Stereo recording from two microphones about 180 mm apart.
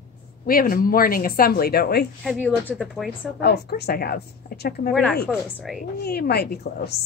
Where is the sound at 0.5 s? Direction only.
50° left (ahead or behind).